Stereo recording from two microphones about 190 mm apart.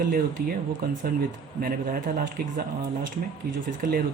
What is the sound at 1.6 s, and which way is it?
Speech, 45° right (ahead or behind).